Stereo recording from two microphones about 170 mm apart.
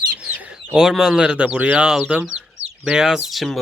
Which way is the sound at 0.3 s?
5° right (ahead or behind).